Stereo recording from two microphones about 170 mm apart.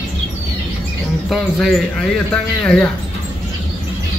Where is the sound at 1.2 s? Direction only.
Centre (ahead or behind).